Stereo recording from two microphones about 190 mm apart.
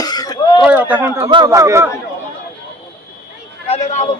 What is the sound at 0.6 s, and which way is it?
Speech, 10° right (ahead or behind).